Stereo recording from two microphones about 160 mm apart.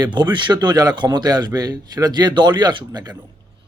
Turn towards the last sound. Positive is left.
turn(degrees=-25)  # may be behind; listen again after turning